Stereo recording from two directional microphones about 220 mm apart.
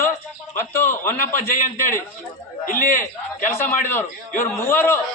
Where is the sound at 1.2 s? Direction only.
35° left (ahead or behind).